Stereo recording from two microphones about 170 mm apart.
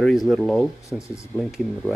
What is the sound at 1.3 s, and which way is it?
Speech, 5° left (ahead or behind).